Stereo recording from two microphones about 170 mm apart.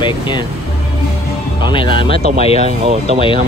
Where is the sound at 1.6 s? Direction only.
30° left (ahead or behind).